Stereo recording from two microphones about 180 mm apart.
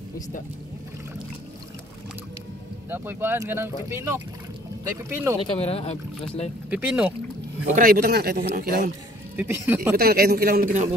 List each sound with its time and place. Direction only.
2.9 s speech: 10° right (ahead or behind)
5.4 s speech: 35° left (ahead or behind)
6.7 s speech: 5° right (ahead or behind)
7.7 s a man's voice: 55° right (ahead or behind)
9.4 s speech: 10° right (ahead or behind)
9.9 s a man's voice: 60° right (ahead or behind)